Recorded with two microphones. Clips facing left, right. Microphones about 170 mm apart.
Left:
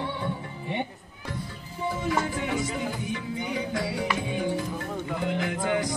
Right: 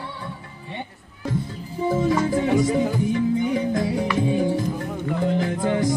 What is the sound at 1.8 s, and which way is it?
Music, 40° right (ahead or behind).